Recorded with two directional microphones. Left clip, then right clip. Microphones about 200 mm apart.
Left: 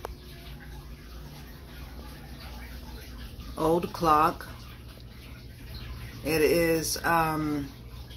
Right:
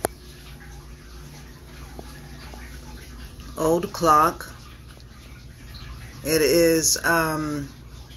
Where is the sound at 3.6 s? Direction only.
15° right (ahead or behind).